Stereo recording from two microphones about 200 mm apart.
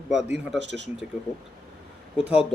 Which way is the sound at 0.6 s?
60° right (ahead or behind).